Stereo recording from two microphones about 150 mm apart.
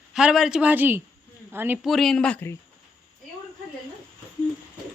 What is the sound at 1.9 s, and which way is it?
Speech, centre (ahead or behind).